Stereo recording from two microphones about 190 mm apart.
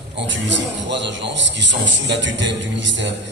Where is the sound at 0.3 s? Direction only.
70° right (ahead or behind).